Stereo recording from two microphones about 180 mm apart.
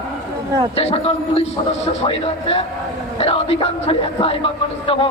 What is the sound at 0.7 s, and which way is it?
A man's voice, 35° left (ahead or behind).